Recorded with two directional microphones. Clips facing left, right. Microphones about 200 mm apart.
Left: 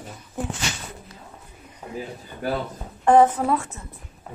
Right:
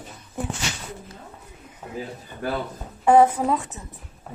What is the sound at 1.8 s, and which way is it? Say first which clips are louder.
Speech: left 1 dB; centre (ahead or behind).